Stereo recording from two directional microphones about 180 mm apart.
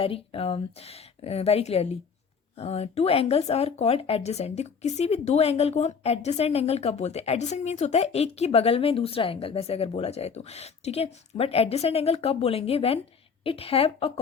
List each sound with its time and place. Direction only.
0.0 s speech: 30° left (ahead or behind)